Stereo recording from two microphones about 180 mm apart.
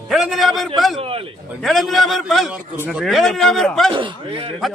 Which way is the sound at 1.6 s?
Centre (ahead or behind).